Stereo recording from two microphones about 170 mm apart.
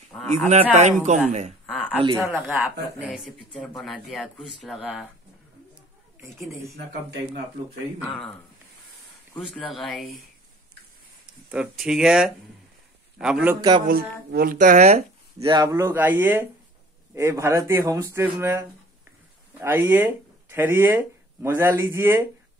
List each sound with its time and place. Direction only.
0.5 s speech: 40° right (ahead or behind)
1.7 s a sound: 5° left (ahead or behind)
2.2 s speech: centre (ahead or behind)
9.5 s speech: centre (ahead or behind)
11.5 s speech: 5° right (ahead or behind)
13.6 s speech: 25° right (ahead or behind)
13.8 s speech: 60° right (ahead or behind); by 15.0 s 40° right (ahead or behind)
15.4 s speech: 25° right (ahead or behind)